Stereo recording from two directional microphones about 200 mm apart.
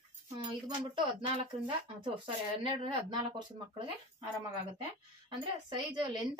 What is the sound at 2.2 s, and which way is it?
Speech, 25° right (ahead or behind).